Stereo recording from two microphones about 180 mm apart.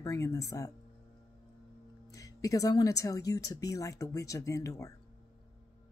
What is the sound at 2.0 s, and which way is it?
Speech, 20° left (ahead or behind).